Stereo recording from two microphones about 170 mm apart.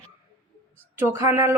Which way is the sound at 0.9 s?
15° right (ahead or behind).